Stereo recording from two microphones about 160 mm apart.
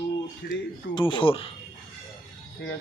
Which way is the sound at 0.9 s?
30° left (ahead or behind).